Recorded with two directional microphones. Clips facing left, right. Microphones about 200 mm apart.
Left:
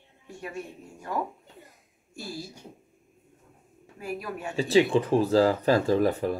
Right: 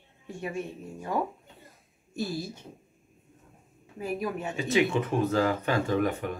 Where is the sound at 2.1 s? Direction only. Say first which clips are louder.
Right 5 dB; 20° right (ahead or behind).